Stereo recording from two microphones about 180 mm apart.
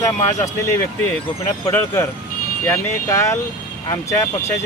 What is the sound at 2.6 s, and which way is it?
Speech, 15° left (ahead or behind).